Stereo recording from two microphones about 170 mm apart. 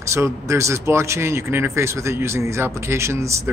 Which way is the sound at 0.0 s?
15° right (ahead or behind).